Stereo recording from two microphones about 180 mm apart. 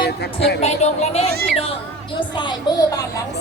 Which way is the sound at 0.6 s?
35° left (ahead or behind).